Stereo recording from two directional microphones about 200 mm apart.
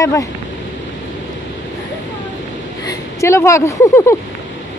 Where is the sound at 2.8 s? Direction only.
15° left (ahead or behind).